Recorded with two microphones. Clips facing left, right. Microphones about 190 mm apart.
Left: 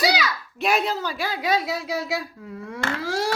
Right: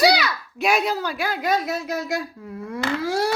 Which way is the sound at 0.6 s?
Centre (ahead or behind).